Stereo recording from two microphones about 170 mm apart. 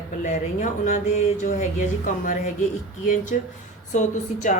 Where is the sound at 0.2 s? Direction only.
50° left (ahead or behind).